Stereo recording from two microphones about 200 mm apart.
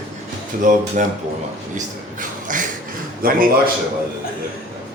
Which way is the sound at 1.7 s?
40° right (ahead or behind).